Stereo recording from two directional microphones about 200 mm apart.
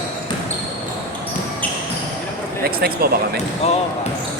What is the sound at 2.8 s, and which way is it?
Speech, 50° right (ahead or behind).